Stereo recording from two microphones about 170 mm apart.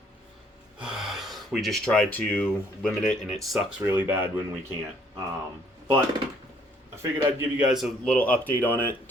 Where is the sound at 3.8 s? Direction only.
15° right (ahead or behind).